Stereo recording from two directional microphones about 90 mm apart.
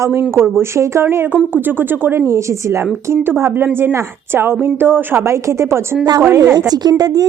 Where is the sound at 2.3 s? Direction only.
35° right (ahead or behind).